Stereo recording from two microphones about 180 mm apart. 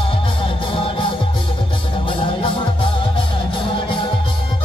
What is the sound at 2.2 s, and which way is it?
Music, 30° left (ahead or behind).